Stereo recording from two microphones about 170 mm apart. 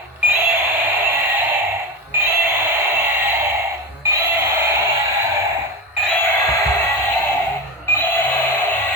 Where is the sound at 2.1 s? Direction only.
15° right (ahead or behind).